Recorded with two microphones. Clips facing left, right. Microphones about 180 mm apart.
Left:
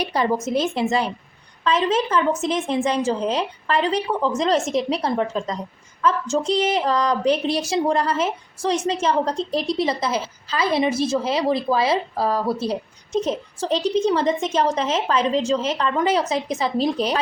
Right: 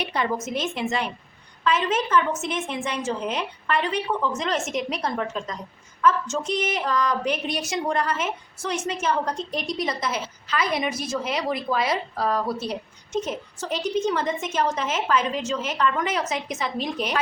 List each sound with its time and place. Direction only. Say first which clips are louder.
0.0 s a woman's voice: left 5 dB; 35° left (ahead or behind)